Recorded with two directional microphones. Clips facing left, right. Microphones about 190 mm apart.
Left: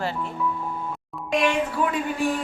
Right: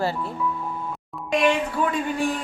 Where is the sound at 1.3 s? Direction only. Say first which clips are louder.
Right 1 dB; centre (ahead or behind).